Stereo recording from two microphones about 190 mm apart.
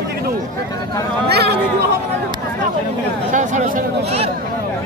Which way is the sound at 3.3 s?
40° right (ahead or behind).